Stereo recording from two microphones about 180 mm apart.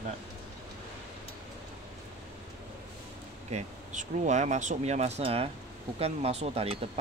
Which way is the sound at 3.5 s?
40° right (ahead or behind).